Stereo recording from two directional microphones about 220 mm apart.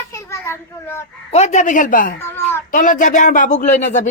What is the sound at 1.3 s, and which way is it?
Speech, 30° left (ahead or behind).